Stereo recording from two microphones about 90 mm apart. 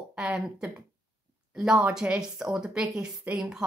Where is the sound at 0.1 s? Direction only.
10° right (ahead or behind).